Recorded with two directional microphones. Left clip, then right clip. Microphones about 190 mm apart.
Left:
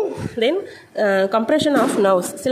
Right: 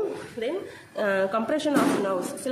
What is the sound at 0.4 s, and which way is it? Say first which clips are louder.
A woman's voice: left 12 dB; 40° left (ahead or behind).